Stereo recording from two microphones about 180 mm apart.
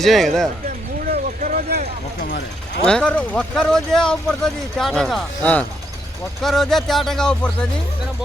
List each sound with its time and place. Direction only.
0.0 s speech: centre (ahead or behind)
1.0 s a sound: 55° right (ahead or behind)
2.8 s speech: 5° left (ahead or behind)